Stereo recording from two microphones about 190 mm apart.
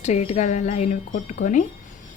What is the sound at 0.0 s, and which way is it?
Speech, 35° left (ahead or behind).